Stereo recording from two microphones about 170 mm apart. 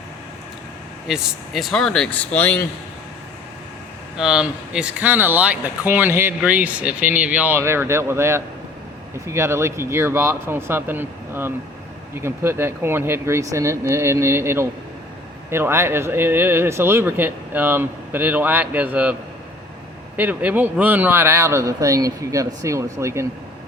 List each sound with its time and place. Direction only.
1.0 s speech: 5° right (ahead or behind)
4.2 s speech: 5° right (ahead or behind)
20.1 s speech: 10° right (ahead or behind)